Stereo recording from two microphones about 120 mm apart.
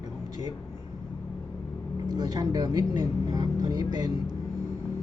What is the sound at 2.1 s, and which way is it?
Speech, 30° right (ahead or behind).